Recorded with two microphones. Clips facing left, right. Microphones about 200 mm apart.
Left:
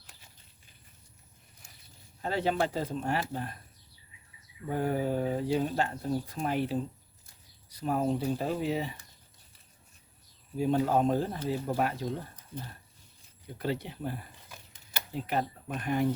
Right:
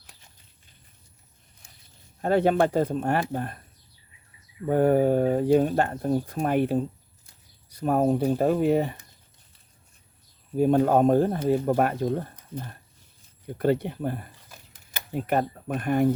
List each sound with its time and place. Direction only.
2.2 s speech: 55° right (ahead or behind)
4.6 s speech: 55° right (ahead or behind)
10.6 s speech: 55° right (ahead or behind)